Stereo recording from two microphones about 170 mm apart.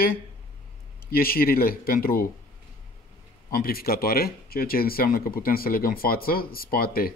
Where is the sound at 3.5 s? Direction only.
60° left (ahead or behind).